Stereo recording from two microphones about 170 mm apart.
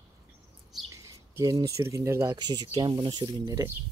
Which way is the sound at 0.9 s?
20° right (ahead or behind).